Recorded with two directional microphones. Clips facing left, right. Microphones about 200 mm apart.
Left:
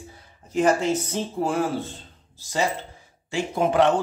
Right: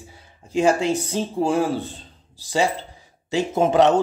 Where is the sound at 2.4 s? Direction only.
15° right (ahead or behind).